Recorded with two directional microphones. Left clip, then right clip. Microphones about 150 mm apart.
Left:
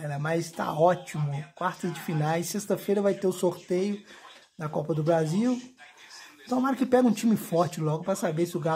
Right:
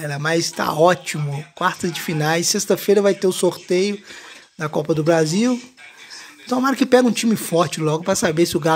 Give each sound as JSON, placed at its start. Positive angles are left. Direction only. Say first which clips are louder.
{"t": 0.0, "sound": "speech", "louder": "right 9 dB", "side_deg": -15}
{"t": 7.1, "sound": "speech", "louder": "right 7 dB", "side_deg": -5}